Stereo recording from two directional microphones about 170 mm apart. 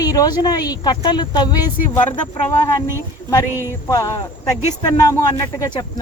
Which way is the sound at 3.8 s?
20° left (ahead or behind).